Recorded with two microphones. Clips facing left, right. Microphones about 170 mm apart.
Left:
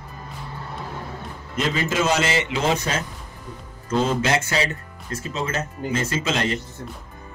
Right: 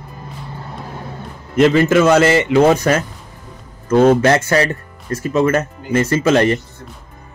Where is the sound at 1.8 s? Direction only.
60° right (ahead or behind).